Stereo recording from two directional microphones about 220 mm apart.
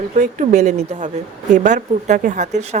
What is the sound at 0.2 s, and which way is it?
A woman's voice, 35° right (ahead or behind).